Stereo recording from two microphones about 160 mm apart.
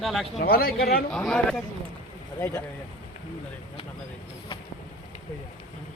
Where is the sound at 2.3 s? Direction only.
15° left (ahead or behind).